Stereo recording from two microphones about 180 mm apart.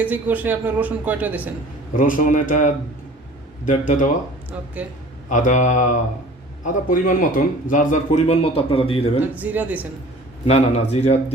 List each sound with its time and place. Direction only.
0.0 s a woman's voice: 10° right (ahead or behind)
2.0 s speech: 45° left (ahead or behind)
5.3 s speech: 45° left (ahead or behind)
9.3 s a woman's voice: 10° right (ahead or behind)
10.4 s speech: 35° left (ahead or behind)